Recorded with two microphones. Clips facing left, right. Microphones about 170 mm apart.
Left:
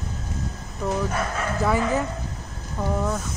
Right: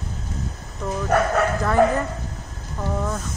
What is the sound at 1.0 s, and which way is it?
Speech, 70° right (ahead or behind).